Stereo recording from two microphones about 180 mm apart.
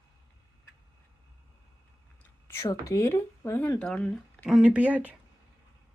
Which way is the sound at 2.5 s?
15° left (ahead or behind).